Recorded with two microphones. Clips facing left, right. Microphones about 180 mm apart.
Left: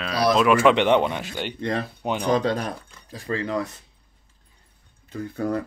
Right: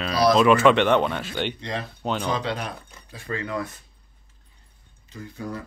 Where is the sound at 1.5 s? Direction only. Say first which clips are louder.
Left 5 dB; 55° left (ahead or behind); by 3.7 s 30° left (ahead or behind).